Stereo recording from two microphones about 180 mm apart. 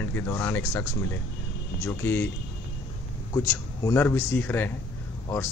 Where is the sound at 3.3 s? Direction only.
15° left (ahead or behind).